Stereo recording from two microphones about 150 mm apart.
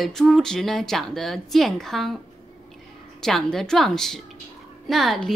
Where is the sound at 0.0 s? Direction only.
Centre (ahead or behind).